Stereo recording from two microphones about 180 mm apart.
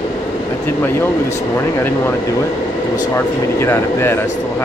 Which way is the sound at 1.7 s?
15° left (ahead or behind).